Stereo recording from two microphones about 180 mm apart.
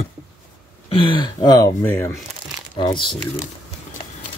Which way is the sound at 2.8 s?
30° left (ahead or behind).